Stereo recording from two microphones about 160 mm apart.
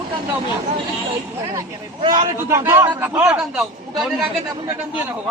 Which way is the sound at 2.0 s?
30° right (ahead or behind).